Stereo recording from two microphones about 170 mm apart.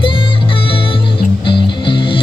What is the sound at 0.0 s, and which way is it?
Music, 30° left (ahead or behind).